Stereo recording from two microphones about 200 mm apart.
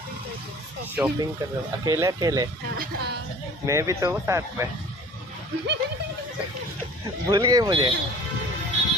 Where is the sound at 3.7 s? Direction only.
15° right (ahead or behind).